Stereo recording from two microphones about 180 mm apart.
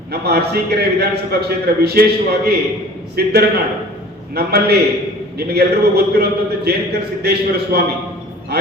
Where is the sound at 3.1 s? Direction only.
60° right (ahead or behind).